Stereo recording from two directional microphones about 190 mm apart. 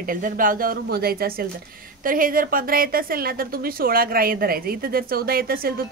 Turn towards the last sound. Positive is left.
turn(degrees=-50)  # may be behind; listen again after turning